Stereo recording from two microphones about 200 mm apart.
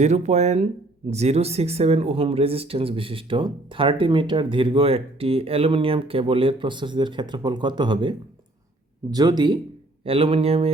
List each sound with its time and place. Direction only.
0.0 s speech: 35° right (ahead or behind)